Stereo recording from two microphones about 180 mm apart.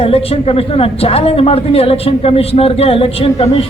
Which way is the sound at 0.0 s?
35° left (ahead or behind).